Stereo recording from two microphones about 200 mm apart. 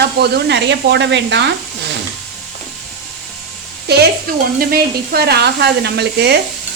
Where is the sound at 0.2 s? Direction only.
55° right (ahead or behind).